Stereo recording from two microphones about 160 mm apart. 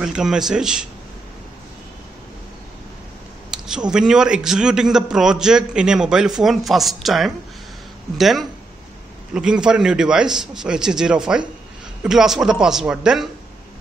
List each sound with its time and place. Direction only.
0.0 s a man's voice: 5° right (ahead or behind)
3.4 s a sound: 5° right (ahead or behind)
3.9 s a man's voice: 5° right (ahead or behind)